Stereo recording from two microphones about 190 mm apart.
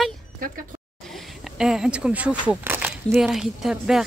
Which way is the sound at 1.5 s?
5° right (ahead or behind).